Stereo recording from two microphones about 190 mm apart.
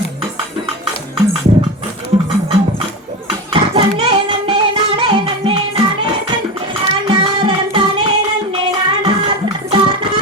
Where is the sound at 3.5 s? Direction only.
25° right (ahead or behind).